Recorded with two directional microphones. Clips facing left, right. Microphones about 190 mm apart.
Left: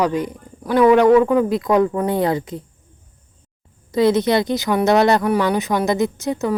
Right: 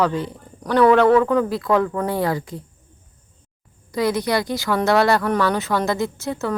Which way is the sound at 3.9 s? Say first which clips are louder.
Left 5 dB; 25° left (ahead or behind).